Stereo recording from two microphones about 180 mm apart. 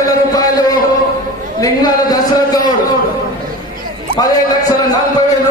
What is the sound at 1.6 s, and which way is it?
A man's voice, 20° left (ahead or behind).